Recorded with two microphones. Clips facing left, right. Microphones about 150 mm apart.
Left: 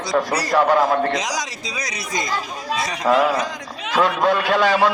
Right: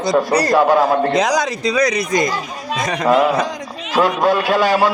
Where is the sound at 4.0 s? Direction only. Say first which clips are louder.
Right 3 dB; 5° right (ahead or behind).